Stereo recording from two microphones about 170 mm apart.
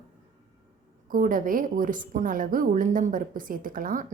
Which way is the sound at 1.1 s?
55° right (ahead or behind).